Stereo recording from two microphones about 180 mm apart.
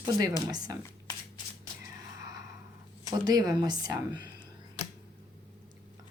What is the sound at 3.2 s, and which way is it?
Speech, 20° right (ahead or behind).